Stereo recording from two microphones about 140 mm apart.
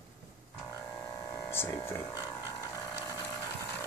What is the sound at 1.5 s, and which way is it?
Speech, 15° left (ahead or behind).